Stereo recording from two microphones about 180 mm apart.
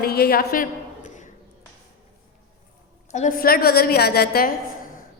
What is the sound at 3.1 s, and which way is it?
A woman's voice, 50° left (ahead or behind).